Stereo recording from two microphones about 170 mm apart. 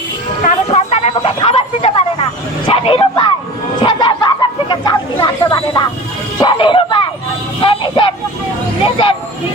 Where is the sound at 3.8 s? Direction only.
25° left (ahead or behind).